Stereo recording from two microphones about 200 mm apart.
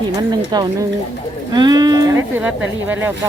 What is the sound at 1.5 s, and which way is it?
Speech, 20° right (ahead or behind).